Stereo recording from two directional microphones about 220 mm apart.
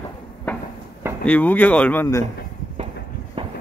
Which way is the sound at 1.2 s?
5° left (ahead or behind).